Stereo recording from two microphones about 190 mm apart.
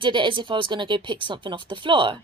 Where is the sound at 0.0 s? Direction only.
25° right (ahead or behind).